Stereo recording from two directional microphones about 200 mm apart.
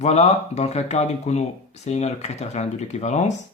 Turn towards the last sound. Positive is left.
turn(degrees=35)  # may be behind; listen again after turning